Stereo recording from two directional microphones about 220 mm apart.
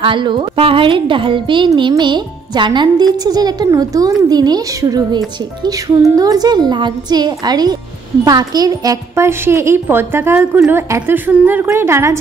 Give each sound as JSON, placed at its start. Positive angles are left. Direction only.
{"t": 0.0, "sound": "a woman's voice", "side_deg": -20}